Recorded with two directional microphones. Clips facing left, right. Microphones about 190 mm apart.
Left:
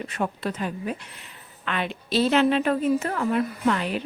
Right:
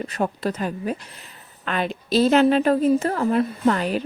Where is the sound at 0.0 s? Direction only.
40° right (ahead or behind).